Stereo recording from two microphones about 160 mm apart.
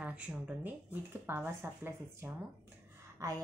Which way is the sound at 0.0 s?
10° right (ahead or behind).